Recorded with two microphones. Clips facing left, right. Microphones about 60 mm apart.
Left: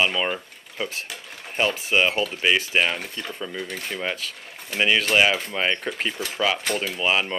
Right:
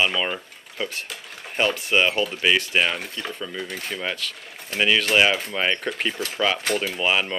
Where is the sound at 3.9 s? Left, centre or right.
Centre.